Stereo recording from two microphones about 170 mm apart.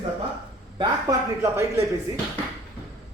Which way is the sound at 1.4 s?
15° right (ahead or behind).